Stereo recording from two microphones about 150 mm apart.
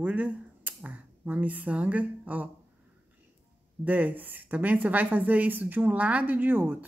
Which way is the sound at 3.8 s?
10° right (ahead or behind).